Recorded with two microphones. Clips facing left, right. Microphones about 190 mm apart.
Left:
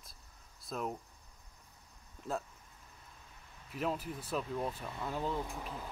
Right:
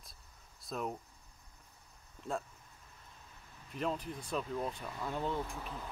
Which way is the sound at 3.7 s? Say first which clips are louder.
Even; 5° left (ahead or behind).